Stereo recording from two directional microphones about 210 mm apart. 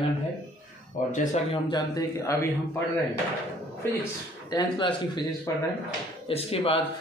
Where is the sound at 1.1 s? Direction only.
30° left (ahead or behind).